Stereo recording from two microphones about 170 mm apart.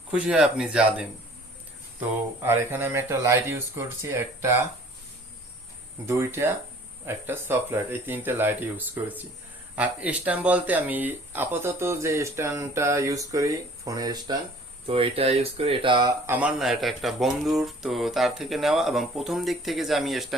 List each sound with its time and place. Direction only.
0.1 s speech: 5° right (ahead or behind)
6.1 s speech: 15° right (ahead or behind)
9.7 s speech: 10° right (ahead or behind)
14.8 s speech: 35° right (ahead or behind)
16.2 s speech: 10° right (ahead or behind)